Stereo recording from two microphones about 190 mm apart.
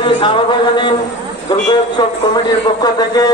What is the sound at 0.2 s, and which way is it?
Speech, 25° left (ahead or behind).